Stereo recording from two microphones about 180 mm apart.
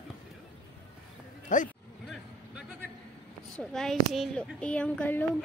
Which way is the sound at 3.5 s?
Centre (ahead or behind).